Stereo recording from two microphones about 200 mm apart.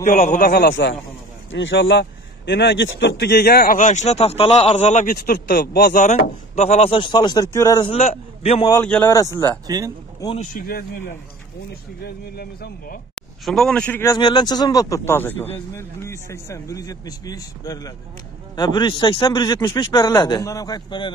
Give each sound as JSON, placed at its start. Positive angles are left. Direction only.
{"t": 0.0, "sound": "speech", "side_deg": 35}
{"t": 1.5, "sound": "speech", "side_deg": 70}
{"t": 5.0, "sound": "speech", "side_deg": 50}
{"t": 5.9, "sound": "a man's voice", "side_deg": 35}
{"t": 7.9, "sound": "a man's voice", "side_deg": 30}
{"t": 8.8, "sound": "speech", "side_deg": 5}
{"t": 9.1, "sound": "speech", "side_deg": 15}
{"t": 9.7, "sound": "speech", "side_deg": -15}
{"t": 10.4, "sound": "speech", "side_deg": 45}
{"t": 13.1, "sound": "a man's voice", "side_deg": 5}
{"t": 14.1, "sound": "a man's voice", "side_deg": 20}